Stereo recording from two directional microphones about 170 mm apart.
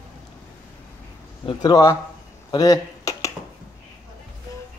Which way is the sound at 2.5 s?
20° left (ahead or behind).